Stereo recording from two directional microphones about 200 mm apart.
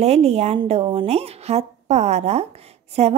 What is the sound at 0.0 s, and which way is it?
A woman's voice, 30° right (ahead or behind).